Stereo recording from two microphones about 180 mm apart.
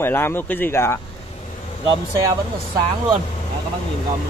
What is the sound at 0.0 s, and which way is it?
Speech, 10° left (ahead or behind).